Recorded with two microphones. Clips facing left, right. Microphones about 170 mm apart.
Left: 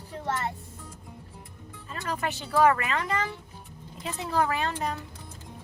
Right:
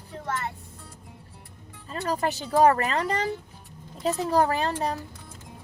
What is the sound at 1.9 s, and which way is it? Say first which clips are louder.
Speech: right 5 dB; 35° right (ahead or behind).